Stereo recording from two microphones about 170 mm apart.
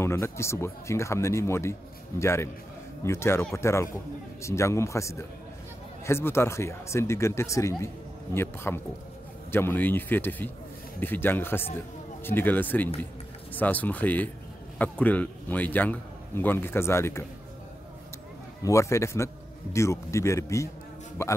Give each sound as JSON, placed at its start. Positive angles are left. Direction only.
{"t": 0.0, "sound": "speech", "side_deg": 15}
{"t": 18.6, "sound": "speech", "side_deg": 15}